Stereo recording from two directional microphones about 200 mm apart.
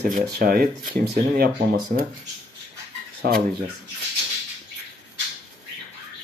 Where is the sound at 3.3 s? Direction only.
50° right (ahead or behind).